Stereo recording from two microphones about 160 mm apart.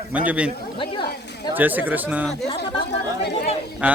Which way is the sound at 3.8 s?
10° right (ahead or behind).